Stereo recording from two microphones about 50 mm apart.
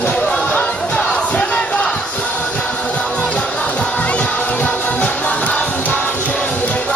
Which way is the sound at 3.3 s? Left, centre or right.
Left.